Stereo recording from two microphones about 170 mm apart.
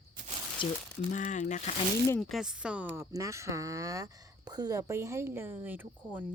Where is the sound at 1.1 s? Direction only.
45° left (ahead or behind).